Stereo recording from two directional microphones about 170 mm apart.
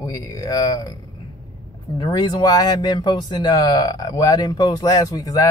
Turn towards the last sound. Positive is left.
turn(degrees=20)  # may be behind; listen again after turning